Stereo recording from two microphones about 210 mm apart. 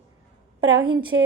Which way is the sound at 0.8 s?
25° right (ahead or behind).